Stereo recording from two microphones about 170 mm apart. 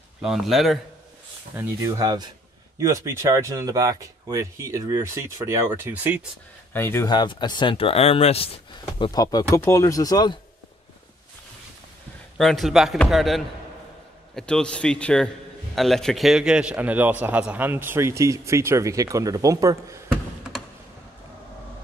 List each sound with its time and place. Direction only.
0.2 s speech: centre (ahead or behind)
1.5 s a man's voice: 15° right (ahead or behind)
6.7 s speech: 15° left (ahead or behind)
7.1 s speech: 25° left (ahead or behind)
12.4 s a man's voice: centre (ahead or behind); by 20.0 s 20° right (ahead or behind)